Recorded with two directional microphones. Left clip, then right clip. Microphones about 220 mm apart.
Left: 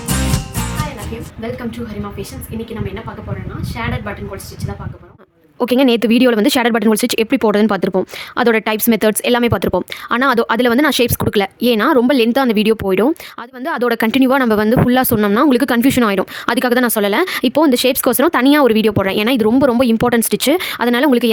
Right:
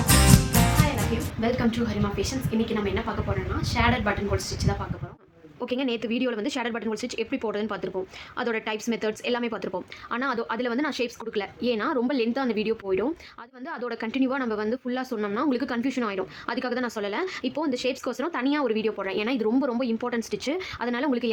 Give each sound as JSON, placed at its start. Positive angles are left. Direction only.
{"t": 3.8, "sound": "speech", "side_deg": 5}
{"t": 5.5, "sound": "speech", "side_deg": 50}